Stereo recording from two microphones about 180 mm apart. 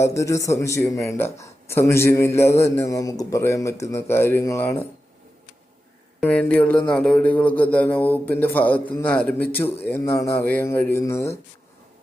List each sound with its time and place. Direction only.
0.0 s speech: 15° left (ahead or behind)
6.1 s speech: 5° left (ahead or behind)